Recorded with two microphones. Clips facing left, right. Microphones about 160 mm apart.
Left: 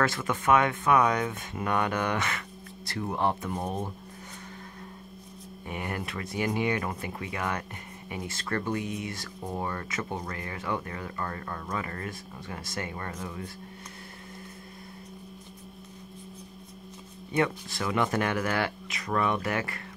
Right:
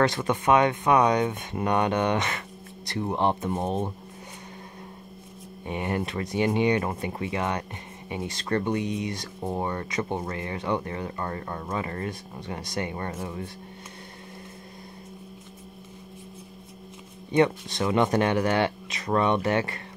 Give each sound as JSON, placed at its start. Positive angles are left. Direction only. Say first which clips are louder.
{"t": 0.0, "sound": "speech", "louder": "right 4 dB", "side_deg": -25}
{"t": 5.7, "sound": "speech", "louder": "right 6 dB", "side_deg": -25}
{"t": 17.4, "sound": "speech", "louder": "right 6 dB", "side_deg": -20}